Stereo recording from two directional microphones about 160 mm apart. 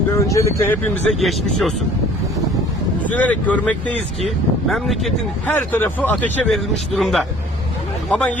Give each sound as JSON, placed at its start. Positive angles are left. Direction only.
{"t": 0.1, "sound": "speech", "side_deg": 20}
{"t": 1.2, "sound": "speech", "side_deg": 0}
{"t": 3.0, "sound": "speech", "side_deg": 10}